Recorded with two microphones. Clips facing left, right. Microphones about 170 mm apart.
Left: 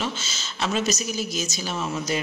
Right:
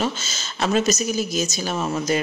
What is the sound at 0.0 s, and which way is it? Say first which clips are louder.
A woman's voice: right 5 dB; 45° right (ahead or behind).